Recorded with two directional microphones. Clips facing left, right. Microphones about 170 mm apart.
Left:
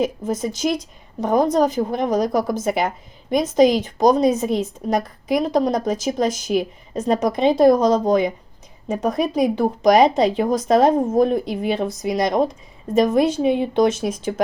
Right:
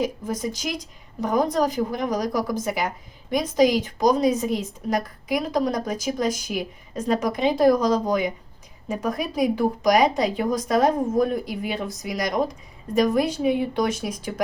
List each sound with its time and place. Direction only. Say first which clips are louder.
0.0 s a woman's voice: left 4 dB; 25° left (ahead or behind)